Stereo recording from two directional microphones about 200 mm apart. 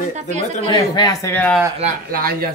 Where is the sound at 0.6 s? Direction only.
20° left (ahead or behind).